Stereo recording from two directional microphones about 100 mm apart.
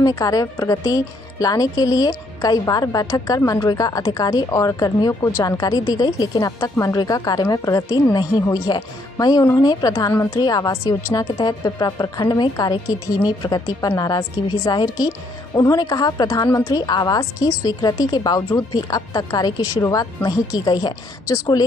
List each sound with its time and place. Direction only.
0.0 s speech: 35° left (ahead or behind)
5.6 s speech: 40° left (ahead or behind)
11.3 s speech: 45° left (ahead or behind)